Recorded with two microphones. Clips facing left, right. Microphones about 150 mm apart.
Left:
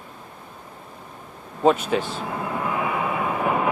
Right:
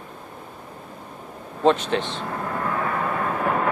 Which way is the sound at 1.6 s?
5° left (ahead or behind).